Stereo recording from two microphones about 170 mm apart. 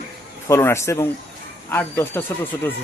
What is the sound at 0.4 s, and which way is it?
Speech, 15° left (ahead or behind).